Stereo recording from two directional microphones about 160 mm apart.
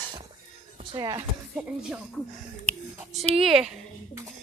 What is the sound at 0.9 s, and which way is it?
Speech, 25° right (ahead or behind).